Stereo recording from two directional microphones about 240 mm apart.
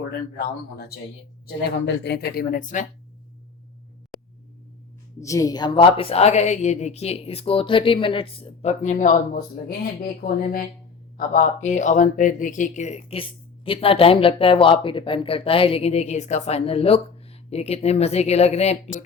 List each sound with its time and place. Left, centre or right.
0.3 s speech: left
5.2 s a woman's voice: centre; by 19.0 s left